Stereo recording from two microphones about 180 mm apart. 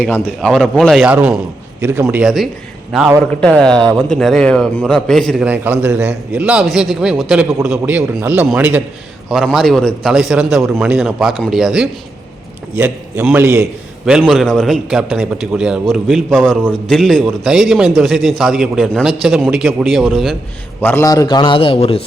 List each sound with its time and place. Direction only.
0.0 s a man's voice: 5° left (ahead or behind)
3.8 s speech: 20° right (ahead or behind)
4.1 s a man's voice: centre (ahead or behind)
20.8 s a man's voice: 15° left (ahead or behind); by 22.0 s 30° left (ahead or behind)